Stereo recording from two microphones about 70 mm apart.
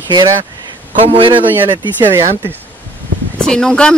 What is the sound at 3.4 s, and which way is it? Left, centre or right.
Speech, centre.